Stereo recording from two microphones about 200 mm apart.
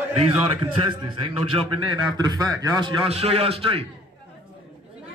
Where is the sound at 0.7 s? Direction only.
25° right (ahead or behind).